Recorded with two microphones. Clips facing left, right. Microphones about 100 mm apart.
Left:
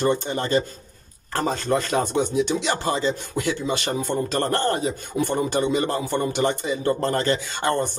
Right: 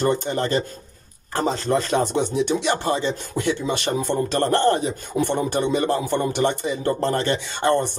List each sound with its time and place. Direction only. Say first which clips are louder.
0.0 s a man's voice: right 1 dB; 40° right (ahead or behind)
1.3 s speech: right 1 dB; 25° right (ahead or behind)